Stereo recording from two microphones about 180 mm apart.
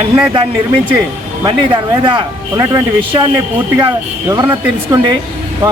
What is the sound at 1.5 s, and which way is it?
Speech, 25° right (ahead or behind).